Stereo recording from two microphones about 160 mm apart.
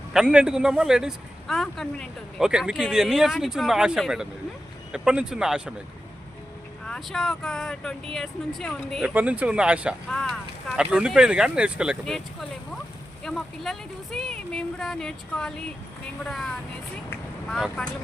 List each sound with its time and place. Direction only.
0.1 s a man's voice: 5° right (ahead or behind)
6.8 s a man's voice: 5° left (ahead or behind)
17.5 s a man's voice: centre (ahead or behind)